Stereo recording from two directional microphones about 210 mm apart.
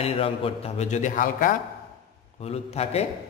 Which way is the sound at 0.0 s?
25° left (ahead or behind).